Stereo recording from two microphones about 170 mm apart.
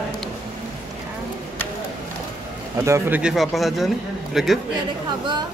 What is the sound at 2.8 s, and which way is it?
Speech, 15° right (ahead or behind).